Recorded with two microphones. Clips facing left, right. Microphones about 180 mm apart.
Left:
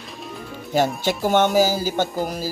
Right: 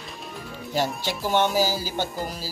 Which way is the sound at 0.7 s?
50° left (ahead or behind).